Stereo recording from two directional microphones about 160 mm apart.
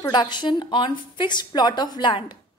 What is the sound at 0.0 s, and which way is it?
A woman's voice, 30° left (ahead or behind).